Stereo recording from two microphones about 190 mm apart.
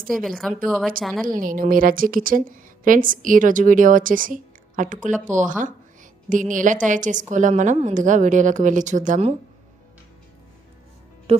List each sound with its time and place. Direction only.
0.1 s speech: centre (ahead or behind)
1.2 s a woman's voice: 45° right (ahead or behind)
11.3 s music: 30° right (ahead or behind)